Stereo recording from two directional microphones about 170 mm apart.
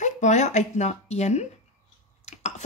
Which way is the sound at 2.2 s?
45° left (ahead or behind).